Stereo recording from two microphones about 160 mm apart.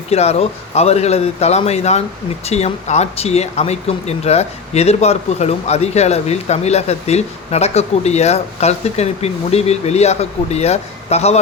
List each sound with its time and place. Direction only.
0.1 s speech: 40° left (ahead or behind)